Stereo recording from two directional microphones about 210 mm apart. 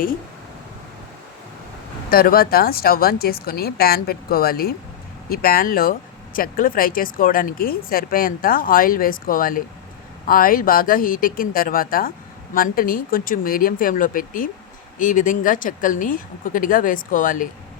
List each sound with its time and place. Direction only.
2.0 s speech: 45° left (ahead or behind)